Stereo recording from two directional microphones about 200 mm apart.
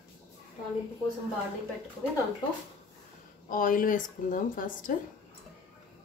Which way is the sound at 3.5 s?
40° left (ahead or behind).